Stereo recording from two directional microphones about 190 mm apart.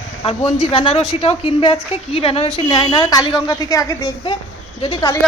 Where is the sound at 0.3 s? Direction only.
30° left (ahead or behind).